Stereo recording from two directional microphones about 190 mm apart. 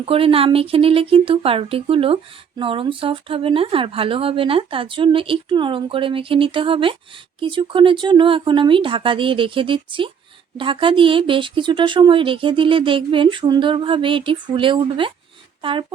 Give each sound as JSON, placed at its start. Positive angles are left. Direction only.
{"t": 0.0, "sound": "speech", "side_deg": -30}